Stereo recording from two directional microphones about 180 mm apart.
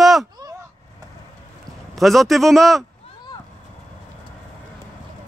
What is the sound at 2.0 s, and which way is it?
Speech, centre (ahead or behind).